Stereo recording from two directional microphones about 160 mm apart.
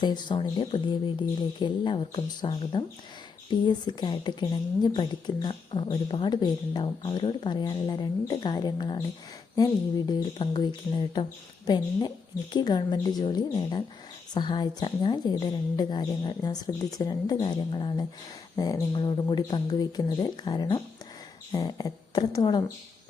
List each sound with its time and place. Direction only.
0.0 s speech: 30° left (ahead or behind)
10.1 s speech: 30° left (ahead or behind)